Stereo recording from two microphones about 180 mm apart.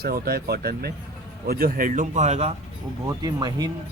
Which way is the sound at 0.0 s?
60° right (ahead or behind).